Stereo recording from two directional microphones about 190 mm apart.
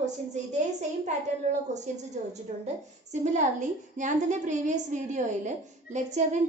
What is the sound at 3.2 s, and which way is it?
A woman's voice, 40° right (ahead or behind).